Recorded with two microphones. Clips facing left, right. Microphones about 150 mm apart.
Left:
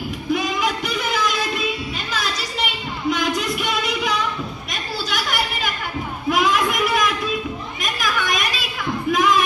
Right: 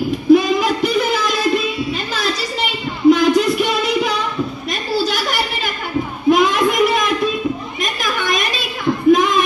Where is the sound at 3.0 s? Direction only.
30° right (ahead or behind).